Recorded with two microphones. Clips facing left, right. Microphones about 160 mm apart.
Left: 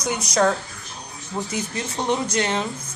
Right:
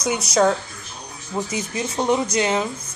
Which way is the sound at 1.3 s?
10° right (ahead or behind).